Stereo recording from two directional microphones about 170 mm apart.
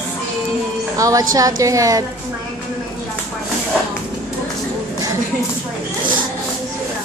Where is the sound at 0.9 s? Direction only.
20° right (ahead or behind).